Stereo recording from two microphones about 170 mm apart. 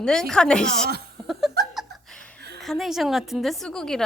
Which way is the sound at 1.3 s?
Centre (ahead or behind).